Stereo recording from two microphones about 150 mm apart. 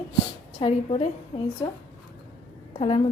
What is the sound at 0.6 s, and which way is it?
Speech, 45° left (ahead or behind).